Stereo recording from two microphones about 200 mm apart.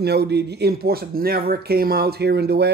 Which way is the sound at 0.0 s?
55° right (ahead or behind).